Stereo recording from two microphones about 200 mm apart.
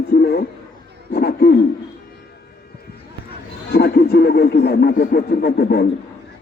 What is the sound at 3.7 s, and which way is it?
Speech, 50° left (ahead or behind).